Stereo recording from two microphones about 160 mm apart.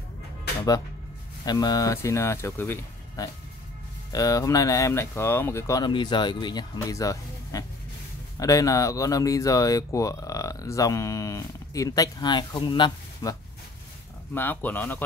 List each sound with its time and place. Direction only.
1.4 s speech: 25° left (ahead or behind)
14.3 s speech: 10° left (ahead or behind)